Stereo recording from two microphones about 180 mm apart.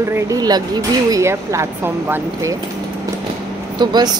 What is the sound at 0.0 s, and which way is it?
A woman's voice, 15° right (ahead or behind).